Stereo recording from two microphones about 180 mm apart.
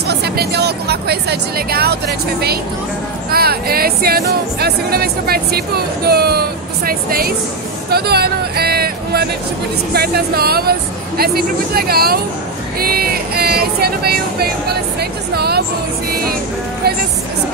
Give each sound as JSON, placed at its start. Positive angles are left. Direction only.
{"t": 0.1, "sound": "music", "side_deg": -65}
{"t": 7.9, "sound": "speech", "side_deg": -60}
{"t": 9.9, "sound": "music", "side_deg": -60}